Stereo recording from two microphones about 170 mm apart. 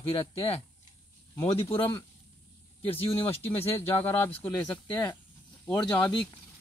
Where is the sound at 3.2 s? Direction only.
10° left (ahead or behind).